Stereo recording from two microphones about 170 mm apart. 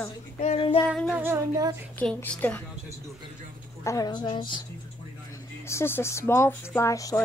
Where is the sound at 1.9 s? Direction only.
10° left (ahead or behind).